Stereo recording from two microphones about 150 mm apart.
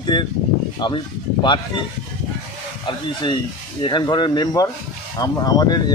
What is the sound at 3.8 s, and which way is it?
Speech, 30° left (ahead or behind).